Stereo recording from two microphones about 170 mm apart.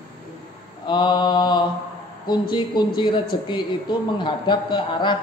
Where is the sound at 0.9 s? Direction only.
25° left (ahead or behind).